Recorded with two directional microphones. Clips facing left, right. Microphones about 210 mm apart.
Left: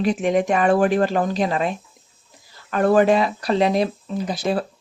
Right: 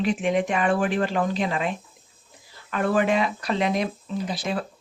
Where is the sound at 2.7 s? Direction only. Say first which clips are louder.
Left 6 dB; 40° left (ahead or behind).